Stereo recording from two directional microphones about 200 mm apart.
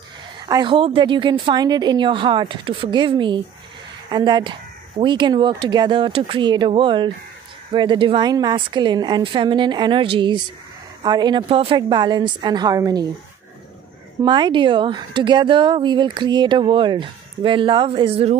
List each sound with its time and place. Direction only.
0.5 s speech: 20° right (ahead or behind)
14.2 s speech: 25° right (ahead or behind)